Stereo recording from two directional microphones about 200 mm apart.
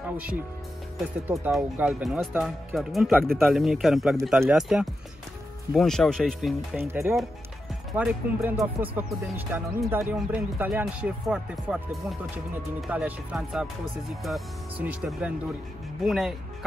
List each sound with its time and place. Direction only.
1.5 s speech: 5° right (ahead or behind)
6.8 s speech: 10° right (ahead or behind)
12.8 s speech: 5° right (ahead or behind)